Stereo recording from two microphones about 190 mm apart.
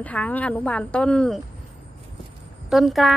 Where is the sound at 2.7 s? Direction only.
Centre (ahead or behind).